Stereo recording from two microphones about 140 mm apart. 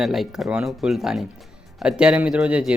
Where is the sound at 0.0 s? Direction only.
Centre (ahead or behind).